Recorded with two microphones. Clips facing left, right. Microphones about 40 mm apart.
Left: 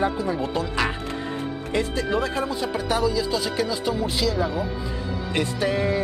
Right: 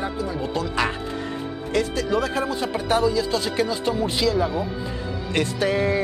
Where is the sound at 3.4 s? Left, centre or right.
Right.